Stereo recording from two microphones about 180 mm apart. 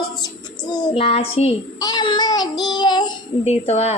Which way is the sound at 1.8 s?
20° left (ahead or behind).